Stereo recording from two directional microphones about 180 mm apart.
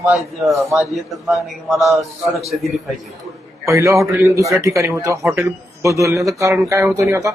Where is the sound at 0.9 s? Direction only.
Centre (ahead or behind).